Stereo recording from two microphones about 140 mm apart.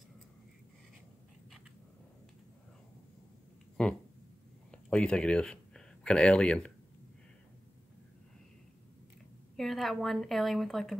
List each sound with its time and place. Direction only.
3.8 s speech: 5° left (ahead or behind)
9.6 s a woman's voice: centre (ahead or behind)